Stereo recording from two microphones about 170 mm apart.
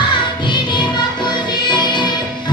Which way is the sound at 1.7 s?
25° left (ahead or behind).